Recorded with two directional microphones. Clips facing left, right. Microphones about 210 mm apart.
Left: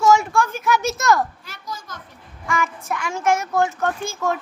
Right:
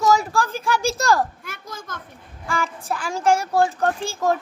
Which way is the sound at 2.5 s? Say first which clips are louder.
Left 1 dB; 30° right (ahead or behind).